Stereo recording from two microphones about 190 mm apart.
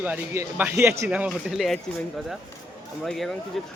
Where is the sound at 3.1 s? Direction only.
Centre (ahead or behind).